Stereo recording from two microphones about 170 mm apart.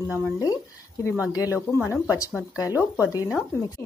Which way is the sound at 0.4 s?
20° left (ahead or behind).